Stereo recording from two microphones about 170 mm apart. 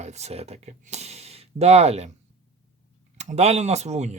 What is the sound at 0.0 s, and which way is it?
Speech, 40° right (ahead or behind).